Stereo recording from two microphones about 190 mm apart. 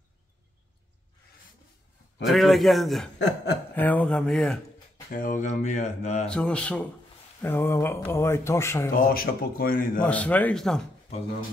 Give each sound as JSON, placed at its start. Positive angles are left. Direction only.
{"t": 2.2, "sound": "a man's voice", "side_deg": 0}
{"t": 3.2, "sound": "chuckle", "side_deg": 65}
{"t": 3.7, "sound": "a man's voice", "side_deg": 10}
{"t": 5.1, "sound": "speech", "side_deg": 45}
{"t": 6.2, "sound": "speech", "side_deg": 5}
{"t": 8.9, "sound": "a man's voice", "side_deg": 50}
{"t": 10.0, "sound": "speech", "side_deg": 5}